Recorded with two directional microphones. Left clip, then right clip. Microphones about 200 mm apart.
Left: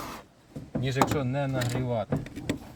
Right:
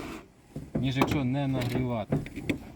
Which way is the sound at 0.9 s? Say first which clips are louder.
Left 3 dB; 5° left (ahead or behind).